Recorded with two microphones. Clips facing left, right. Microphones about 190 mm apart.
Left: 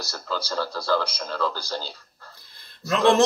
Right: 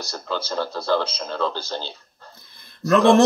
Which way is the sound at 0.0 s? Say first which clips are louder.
Right 2 dB; 20° right (ahead or behind).